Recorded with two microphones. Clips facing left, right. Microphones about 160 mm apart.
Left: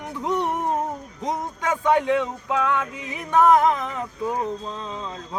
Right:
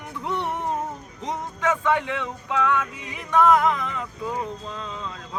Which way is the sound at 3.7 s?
40° left (ahead or behind).